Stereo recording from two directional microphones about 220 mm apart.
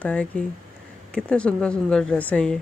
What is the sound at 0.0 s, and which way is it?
Speech, 5° left (ahead or behind).